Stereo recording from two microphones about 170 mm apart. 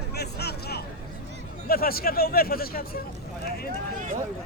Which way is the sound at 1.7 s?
60° left (ahead or behind).